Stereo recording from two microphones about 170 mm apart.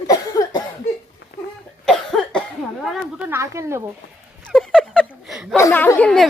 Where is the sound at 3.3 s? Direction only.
15° right (ahead or behind).